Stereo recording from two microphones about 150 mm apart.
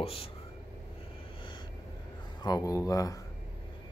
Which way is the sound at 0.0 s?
40° left (ahead or behind).